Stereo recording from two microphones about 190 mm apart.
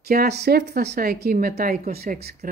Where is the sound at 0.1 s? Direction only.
55° right (ahead or behind).